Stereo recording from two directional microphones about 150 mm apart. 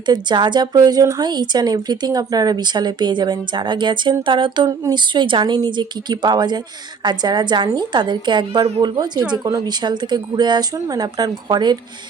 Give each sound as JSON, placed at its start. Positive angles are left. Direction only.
{"t": 0.0, "sound": "a woman's voice", "side_deg": -30}